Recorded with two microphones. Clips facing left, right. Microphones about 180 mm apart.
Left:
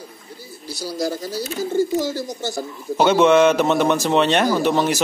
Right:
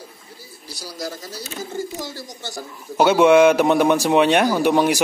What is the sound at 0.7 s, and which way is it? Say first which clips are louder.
Speech: left 7 dB; 25° left (ahead or behind).